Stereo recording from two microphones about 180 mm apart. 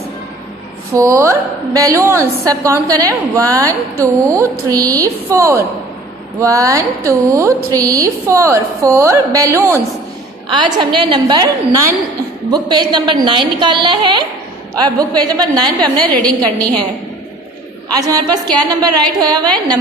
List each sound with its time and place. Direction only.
0.9 s a woman's voice: 15° right (ahead or behind)
10.6 s a woman's voice: 25° right (ahead or behind)
16.1 s a woman's voice: 5° left (ahead or behind)
17.9 s a woman's voice: 20° right (ahead or behind)